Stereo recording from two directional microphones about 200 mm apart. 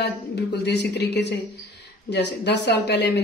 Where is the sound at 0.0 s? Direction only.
55° left (ahead or behind).